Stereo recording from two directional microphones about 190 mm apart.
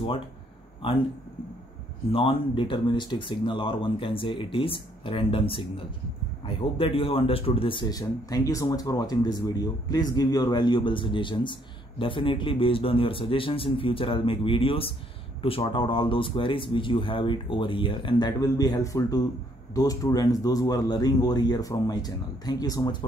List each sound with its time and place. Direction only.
0.8 s speech: 30° left (ahead or behind)
2.1 s speech: 30° left (ahead or behind)